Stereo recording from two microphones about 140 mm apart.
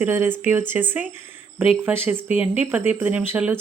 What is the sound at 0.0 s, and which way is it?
Speech, 15° right (ahead or behind).